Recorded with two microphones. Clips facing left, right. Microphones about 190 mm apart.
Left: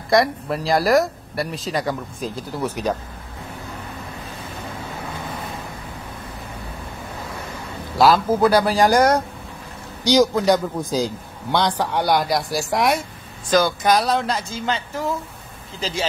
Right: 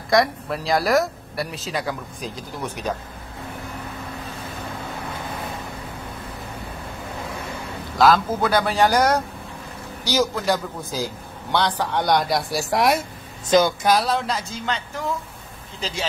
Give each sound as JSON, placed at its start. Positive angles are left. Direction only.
{"t": 0.1, "sound": "speech", "side_deg": 0}
{"t": 8.0, "sound": "a man's voice", "side_deg": 5}
{"t": 13.5, "sound": "speech", "side_deg": -20}
{"t": 13.8, "sound": "speech", "side_deg": 0}
{"t": 15.8, "sound": "speech", "side_deg": 0}